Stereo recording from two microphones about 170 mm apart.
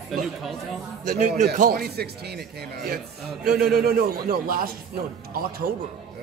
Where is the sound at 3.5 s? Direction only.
65° right (ahead or behind).